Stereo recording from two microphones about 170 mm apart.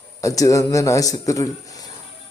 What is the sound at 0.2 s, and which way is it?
A man's voice, 20° left (ahead or behind).